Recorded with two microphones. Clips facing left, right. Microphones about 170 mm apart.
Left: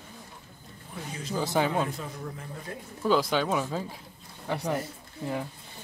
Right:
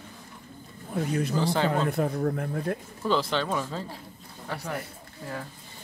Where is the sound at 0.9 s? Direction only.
60° right (ahead or behind).